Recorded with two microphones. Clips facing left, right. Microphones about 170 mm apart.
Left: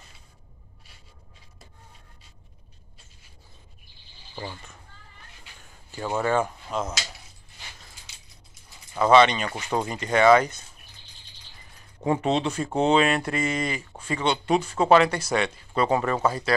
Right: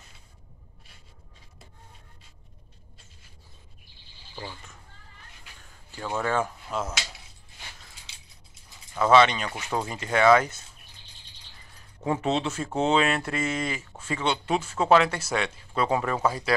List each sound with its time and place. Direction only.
4.4 s speech: 5° left (ahead or behind)
5.9 s speech: 20° left (ahead or behind)
6.2 s speech: centre (ahead or behind)
9.0 s speech: centre (ahead or behind)
12.0 s speech: centre (ahead or behind)